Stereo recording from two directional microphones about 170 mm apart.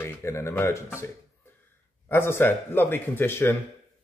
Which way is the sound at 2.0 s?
15° left (ahead or behind).